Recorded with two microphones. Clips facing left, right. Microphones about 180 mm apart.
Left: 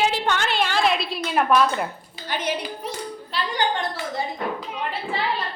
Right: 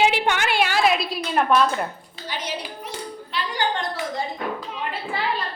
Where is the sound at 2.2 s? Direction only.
50° left (ahead or behind).